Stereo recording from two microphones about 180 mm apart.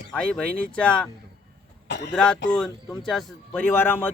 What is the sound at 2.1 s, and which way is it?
Speech, 5° left (ahead or behind).